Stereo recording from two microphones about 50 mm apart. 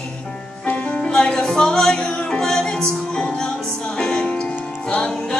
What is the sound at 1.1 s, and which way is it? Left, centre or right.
Music, centre.